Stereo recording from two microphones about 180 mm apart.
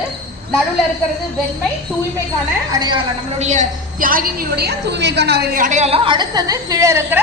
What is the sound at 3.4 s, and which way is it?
A woman's voice, 45° right (ahead or behind).